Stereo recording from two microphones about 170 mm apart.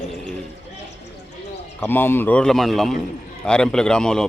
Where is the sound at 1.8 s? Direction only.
10° left (ahead or behind).